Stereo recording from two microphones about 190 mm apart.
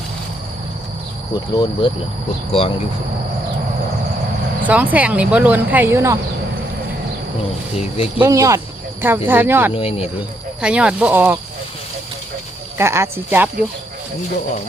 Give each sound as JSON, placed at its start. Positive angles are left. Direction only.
{"t": 2.5, "sound": "speech", "side_deg": 30}
{"t": 4.6, "sound": "speech", "side_deg": -10}
{"t": 7.8, "sound": "speech", "side_deg": 30}
{"t": 8.2, "sound": "speech", "side_deg": -15}
{"t": 9.7, "sound": "speech", "side_deg": 30}
{"t": 10.6, "sound": "speech", "side_deg": -5}
{"t": 12.7, "sound": "speech", "side_deg": -15}